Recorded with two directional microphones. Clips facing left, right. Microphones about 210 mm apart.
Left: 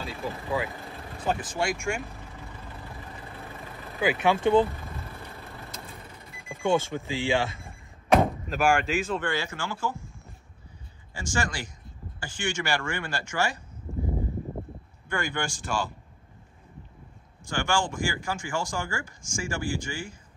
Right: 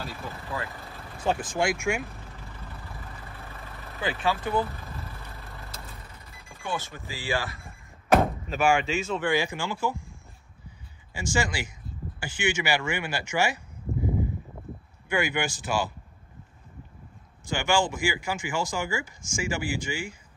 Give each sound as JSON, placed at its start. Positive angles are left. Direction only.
{"t": 0.0, "sound": "speech", "side_deg": 0}
{"t": 4.2, "sound": "speech", "side_deg": 25}
{"t": 6.7, "sound": "speech", "side_deg": 25}
{"t": 8.1, "sound": "speech", "side_deg": 0}
{"t": 9.2, "sound": "speech", "side_deg": -15}
{"t": 11.1, "sound": "speech", "side_deg": -10}
{"t": 15.0, "sound": "speech", "side_deg": -5}
{"t": 17.5, "sound": "speech", "side_deg": -5}